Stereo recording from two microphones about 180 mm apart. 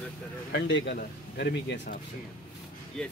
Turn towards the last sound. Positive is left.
turn(degrees=5)  # may be behind; listen again after turning